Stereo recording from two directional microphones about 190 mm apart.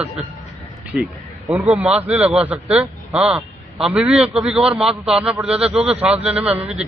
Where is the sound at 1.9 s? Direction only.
35° right (ahead or behind).